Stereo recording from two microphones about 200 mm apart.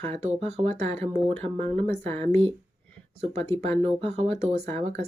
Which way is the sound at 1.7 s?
10° left (ahead or behind).